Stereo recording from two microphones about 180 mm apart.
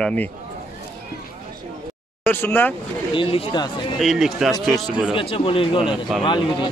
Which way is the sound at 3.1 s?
30° left (ahead or behind).